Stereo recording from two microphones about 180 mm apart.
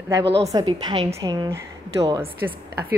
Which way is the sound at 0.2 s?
30° right (ahead or behind).